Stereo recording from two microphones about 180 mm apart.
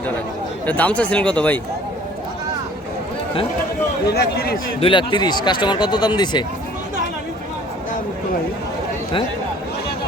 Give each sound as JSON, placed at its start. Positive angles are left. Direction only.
{"t": 0.6, "sound": "speech", "side_deg": 10}
{"t": 4.1, "sound": "a man's voice", "side_deg": 60}
{"t": 4.8, "sound": "speech", "side_deg": 25}